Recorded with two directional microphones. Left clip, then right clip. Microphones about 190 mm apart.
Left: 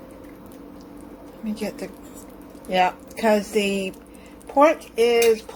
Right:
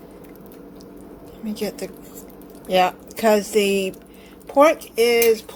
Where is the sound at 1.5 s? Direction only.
20° right (ahead or behind).